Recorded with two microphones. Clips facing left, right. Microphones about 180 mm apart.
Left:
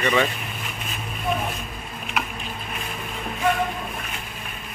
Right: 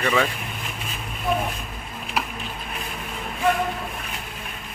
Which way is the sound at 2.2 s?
30° right (ahead or behind).